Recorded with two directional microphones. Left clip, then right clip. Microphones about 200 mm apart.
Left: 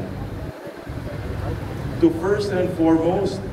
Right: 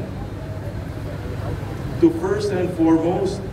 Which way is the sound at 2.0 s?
5° left (ahead or behind).